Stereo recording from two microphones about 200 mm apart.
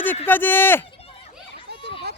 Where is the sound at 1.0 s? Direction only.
30° left (ahead or behind).